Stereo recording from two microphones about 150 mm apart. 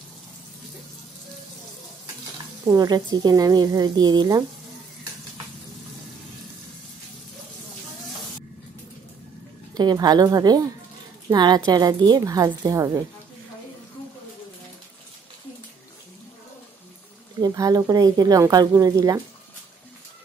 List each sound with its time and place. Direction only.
2.7 s speech: 25° right (ahead or behind)
9.8 s speech: 25° right (ahead or behind)
17.4 s speech: 25° right (ahead or behind)